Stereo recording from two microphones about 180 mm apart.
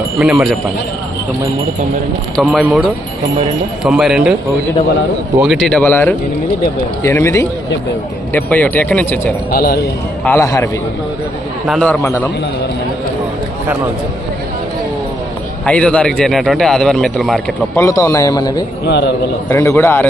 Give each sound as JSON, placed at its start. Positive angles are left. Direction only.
{"t": 0.2, "sound": "a man's voice", "side_deg": -5}
{"t": 2.3, "sound": "a man's voice", "side_deg": 0}
{"t": 3.8, "sound": "a man's voice", "side_deg": -5}
{"t": 5.4, "sound": "a man's voice", "side_deg": 0}
{"t": 9.5, "sound": "speech", "side_deg": 55}
{"t": 10.2, "sound": "speech", "side_deg": 15}
{"t": 11.7, "sound": "speech", "side_deg": 5}
{"t": 15.6, "sound": "a man's voice", "side_deg": 5}
{"t": 17.7, "sound": "a man's voice", "side_deg": 15}
{"t": 18.9, "sound": "a man's voice", "side_deg": 70}
{"t": 19.5, "sound": "speech", "side_deg": 15}